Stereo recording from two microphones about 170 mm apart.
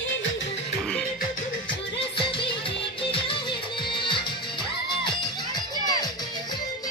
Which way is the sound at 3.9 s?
30° left (ahead or behind).